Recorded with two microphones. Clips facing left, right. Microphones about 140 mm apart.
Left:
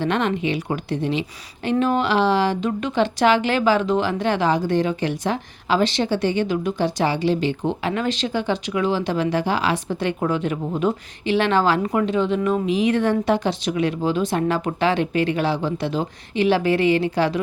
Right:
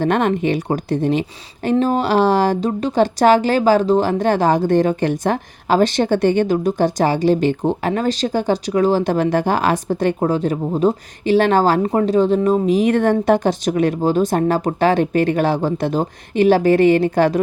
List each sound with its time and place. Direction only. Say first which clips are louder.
0.0 s speech: right 5 dB; 45° right (ahead or behind)